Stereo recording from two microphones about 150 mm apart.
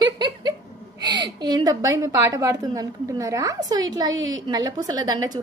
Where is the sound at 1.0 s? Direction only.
30° right (ahead or behind).